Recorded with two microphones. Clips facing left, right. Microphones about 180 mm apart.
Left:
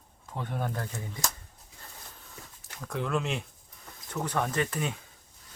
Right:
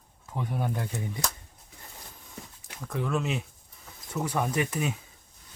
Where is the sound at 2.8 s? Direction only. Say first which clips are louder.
Right 1 dB; centre (ahead or behind).